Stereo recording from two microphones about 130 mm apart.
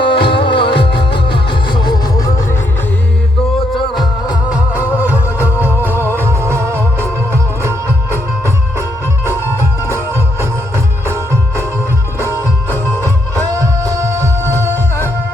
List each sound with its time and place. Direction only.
0.0 s music: 40° left (ahead or behind)
4.4 s music: 10° right (ahead or behind)
13.5 s music: 25° right (ahead or behind)